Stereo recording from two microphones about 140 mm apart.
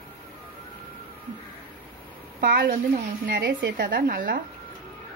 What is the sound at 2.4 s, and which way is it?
A woman's voice, 90° right.